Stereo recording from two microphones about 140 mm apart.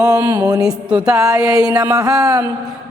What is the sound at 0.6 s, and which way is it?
Mantra, 5° right (ahead or behind).